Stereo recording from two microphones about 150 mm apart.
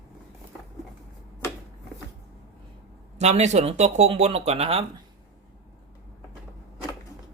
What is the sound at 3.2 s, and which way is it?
Speech, 50° right (ahead or behind).